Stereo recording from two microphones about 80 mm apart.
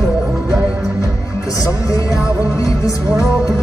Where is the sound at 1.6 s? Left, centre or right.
Left.